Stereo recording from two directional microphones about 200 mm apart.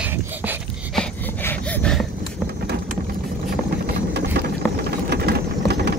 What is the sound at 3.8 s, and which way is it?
Vehicle, 55° right (ahead or behind).